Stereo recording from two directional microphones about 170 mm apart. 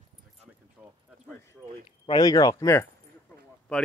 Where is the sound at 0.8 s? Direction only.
10° right (ahead or behind).